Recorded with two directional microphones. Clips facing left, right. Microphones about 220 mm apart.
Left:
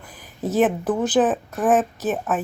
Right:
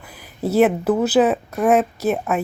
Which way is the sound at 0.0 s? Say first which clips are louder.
Right 3 dB; 10° right (ahead or behind).